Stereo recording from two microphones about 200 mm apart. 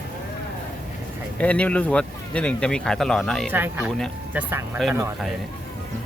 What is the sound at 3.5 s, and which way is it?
Speech, 10° right (ahead or behind).